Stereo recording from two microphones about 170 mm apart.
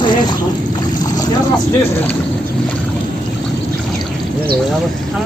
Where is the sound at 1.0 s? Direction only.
20° left (ahead or behind).